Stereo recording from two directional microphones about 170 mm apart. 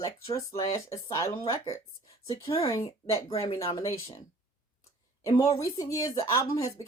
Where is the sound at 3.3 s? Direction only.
30° left (ahead or behind).